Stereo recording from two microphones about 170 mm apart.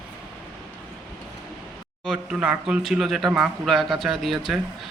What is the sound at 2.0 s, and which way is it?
Speech, 5° right (ahead or behind).